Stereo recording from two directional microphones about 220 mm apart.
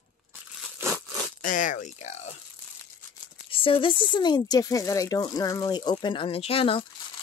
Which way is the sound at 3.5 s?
25° left (ahead or behind).